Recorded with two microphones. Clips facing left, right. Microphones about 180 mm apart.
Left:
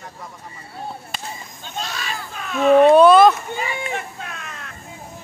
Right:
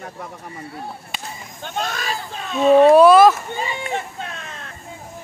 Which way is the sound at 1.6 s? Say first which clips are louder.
Right 5 dB; 50° right (ahead or behind).